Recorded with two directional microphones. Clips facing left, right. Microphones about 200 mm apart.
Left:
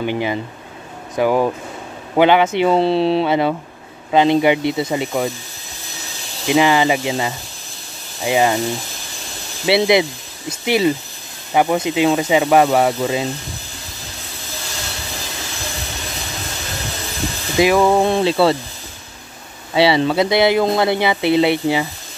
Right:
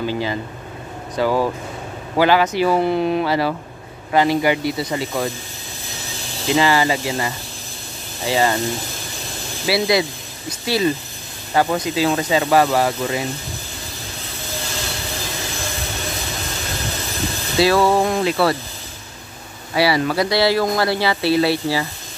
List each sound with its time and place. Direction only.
0.0 s speech: 20° left (ahead or behind)
6.4 s speech: 20° left (ahead or behind)
8.3 s a sound: 15° left (ahead or behind)
9.7 s speech: 25° left (ahead or behind)
17.6 s a sound: 15° left (ahead or behind)
18.1 s speech: 25° left (ahead or behind)
19.7 s speech: 25° left (ahead or behind)